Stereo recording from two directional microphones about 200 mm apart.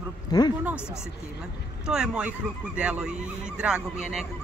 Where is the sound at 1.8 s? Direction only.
5° right (ahead or behind).